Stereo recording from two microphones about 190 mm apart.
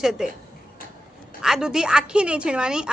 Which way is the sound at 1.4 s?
5° right (ahead or behind).